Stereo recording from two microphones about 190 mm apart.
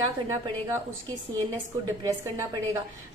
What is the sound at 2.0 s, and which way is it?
Speech, 15° right (ahead or behind).